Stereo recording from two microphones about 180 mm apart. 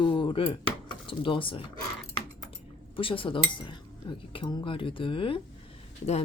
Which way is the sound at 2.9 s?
30° left (ahead or behind).